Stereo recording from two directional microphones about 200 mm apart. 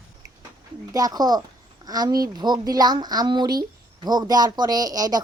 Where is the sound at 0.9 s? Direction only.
20° right (ahead or behind).